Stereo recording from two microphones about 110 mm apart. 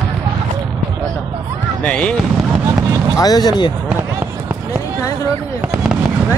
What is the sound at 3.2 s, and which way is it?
Speech, 35° left (ahead or behind).